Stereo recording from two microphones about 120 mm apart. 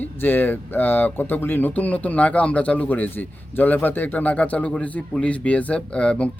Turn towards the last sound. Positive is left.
turn(degrees=10)  # may be behind; listen again after turning